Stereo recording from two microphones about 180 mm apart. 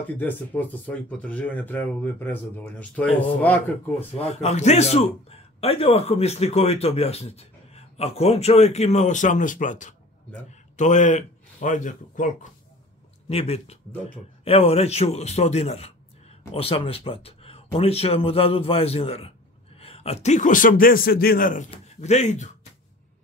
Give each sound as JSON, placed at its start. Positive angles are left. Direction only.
{"t": 0.0, "sound": "speech", "side_deg": 10}
{"t": 4.1, "sound": "speech", "side_deg": 35}
{"t": 13.3, "sound": "speech", "side_deg": 35}
{"t": 21.6, "sound": "speech", "side_deg": 40}